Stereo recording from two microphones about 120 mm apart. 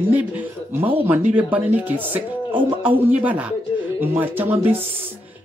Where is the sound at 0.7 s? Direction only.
15° right (ahead or behind).